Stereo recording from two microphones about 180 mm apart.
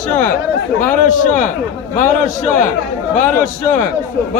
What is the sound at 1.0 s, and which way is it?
Speech, 45° left (ahead or behind).